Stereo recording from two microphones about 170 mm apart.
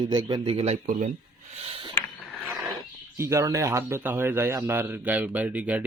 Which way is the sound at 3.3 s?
20° right (ahead or behind).